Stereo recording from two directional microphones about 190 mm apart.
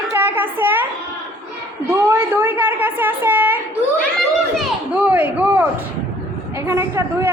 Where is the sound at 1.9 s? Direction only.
15° right (ahead or behind).